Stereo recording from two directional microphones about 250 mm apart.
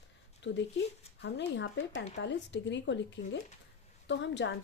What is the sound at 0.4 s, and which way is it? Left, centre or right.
A woman's voice, left.